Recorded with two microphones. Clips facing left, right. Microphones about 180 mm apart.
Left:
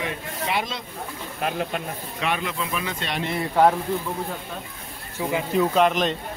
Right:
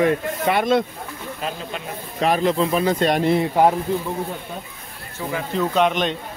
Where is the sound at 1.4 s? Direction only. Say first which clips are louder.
Left 4 dB; 60° left (ahead or behind).